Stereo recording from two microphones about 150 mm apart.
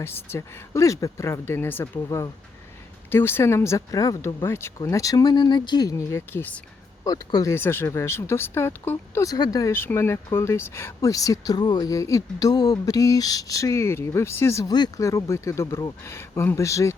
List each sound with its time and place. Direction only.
0.0 s speech: 15° left (ahead or behind)
7.0 s speech: 25° left (ahead or behind)